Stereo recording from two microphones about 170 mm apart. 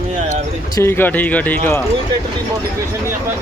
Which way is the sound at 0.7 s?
15° left (ahead or behind).